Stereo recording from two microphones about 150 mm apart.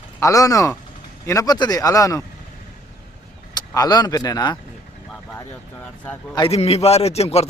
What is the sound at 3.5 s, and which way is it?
Speech, 25° left (ahead or behind).